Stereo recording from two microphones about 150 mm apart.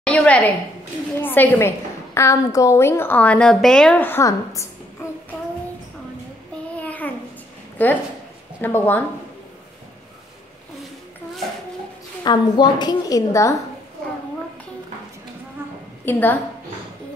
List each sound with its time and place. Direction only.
0.0 s a sound: 5° left (ahead or behind)
1.2 s a woman's voice: 15° left (ahead or behind)
6.8 s a sound: 10° left (ahead or behind)
8.5 s a woman's voice: 15° left (ahead or behind)
12.2 s a woman's voice: 30° left (ahead or behind)
16.1 s a woman's voice: 15° left (ahead or behind)